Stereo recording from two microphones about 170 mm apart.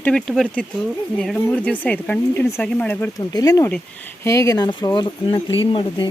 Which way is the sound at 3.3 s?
20° left (ahead or behind).